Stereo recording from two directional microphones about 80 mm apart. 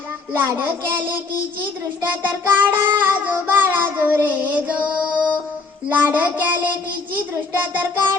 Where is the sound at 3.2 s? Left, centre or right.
Right.